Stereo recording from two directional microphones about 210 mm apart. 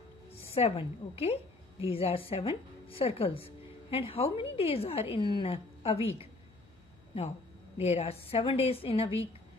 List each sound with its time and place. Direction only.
0.3 s a woman's voice: 30° left (ahead or behind)
7.7 s a woman's voice: 30° left (ahead or behind)